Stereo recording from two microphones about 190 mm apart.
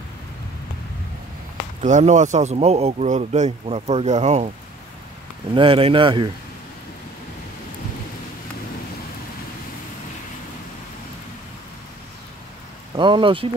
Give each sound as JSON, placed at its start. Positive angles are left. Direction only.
{"t": 1.8, "sound": "speech", "side_deg": -40}
{"t": 5.5, "sound": "speech", "side_deg": -25}
{"t": 12.9, "sound": "speech", "side_deg": -25}